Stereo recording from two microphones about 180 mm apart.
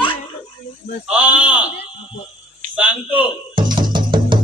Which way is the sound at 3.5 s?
25° right (ahead or behind).